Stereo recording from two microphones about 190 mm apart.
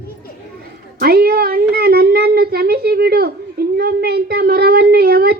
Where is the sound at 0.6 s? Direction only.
55° right (ahead or behind).